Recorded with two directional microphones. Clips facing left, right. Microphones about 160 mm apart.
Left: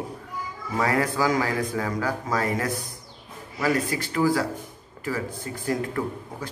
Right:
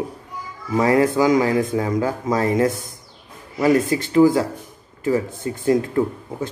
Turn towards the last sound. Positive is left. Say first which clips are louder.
# right 8 dB
turn(degrees=-25)  # may be behind; listen again after turning